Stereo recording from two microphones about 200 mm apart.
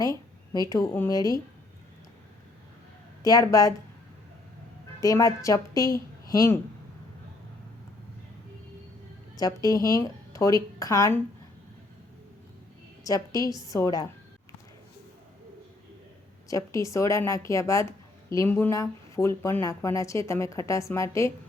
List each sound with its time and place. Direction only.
0.0 s a sound: 20° right (ahead or behind)
0.7 s a woman's voice: 15° left (ahead or behind)
3.2 s a woman's voice: 15° left (ahead or behind)
5.0 s a woman's voice: 15° left (ahead or behind)
9.3 s a woman's voice: 20° left (ahead or behind)
13.1 s a woman's voice: 15° left (ahead or behind)
16.5 s a woman's voice: 15° left (ahead or behind)